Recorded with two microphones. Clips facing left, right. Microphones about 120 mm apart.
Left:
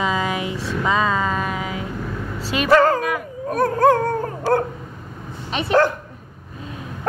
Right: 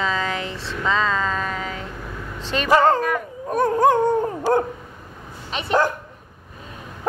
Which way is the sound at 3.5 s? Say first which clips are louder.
Left 1 dB; 20° right (ahead or behind).